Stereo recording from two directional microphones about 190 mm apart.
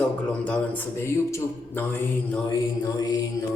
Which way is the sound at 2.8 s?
20° left (ahead or behind).